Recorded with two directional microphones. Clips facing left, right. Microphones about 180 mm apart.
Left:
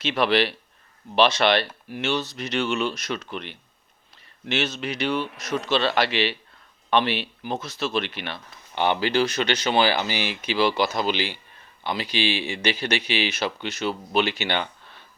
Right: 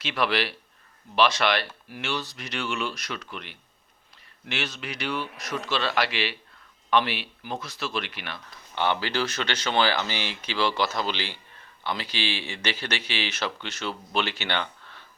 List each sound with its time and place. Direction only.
0.0 s speech: 25° left (ahead or behind)